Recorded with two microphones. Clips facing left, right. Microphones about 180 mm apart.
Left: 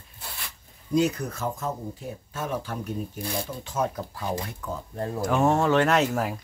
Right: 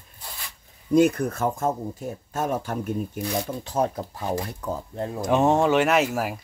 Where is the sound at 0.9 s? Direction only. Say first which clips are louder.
Right 5 dB; 55° right (ahead or behind).